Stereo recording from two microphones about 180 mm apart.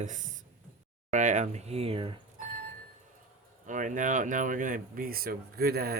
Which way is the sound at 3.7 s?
45° right (ahead or behind).